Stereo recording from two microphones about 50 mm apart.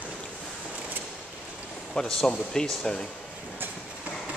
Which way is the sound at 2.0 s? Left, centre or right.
Centre.